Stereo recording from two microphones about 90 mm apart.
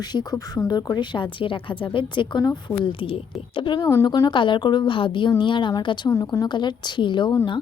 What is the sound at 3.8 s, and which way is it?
Speech, 35° left (ahead or behind).